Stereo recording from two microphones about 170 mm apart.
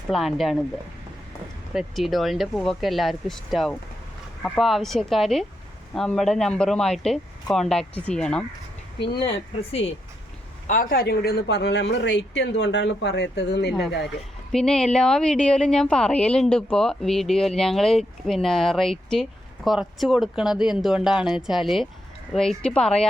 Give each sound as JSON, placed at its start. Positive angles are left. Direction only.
{"t": 0.1, "sound": "speech", "side_deg": 0}
{"t": 1.7, "sound": "speech", "side_deg": 0}
{"t": 9.1, "sound": "speech", "side_deg": 30}
{"t": 10.7, "sound": "speech", "side_deg": 55}
{"t": 14.5, "sound": "speech", "side_deg": 5}